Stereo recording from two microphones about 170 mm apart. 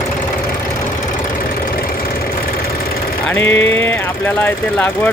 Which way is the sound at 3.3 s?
10° left (ahead or behind).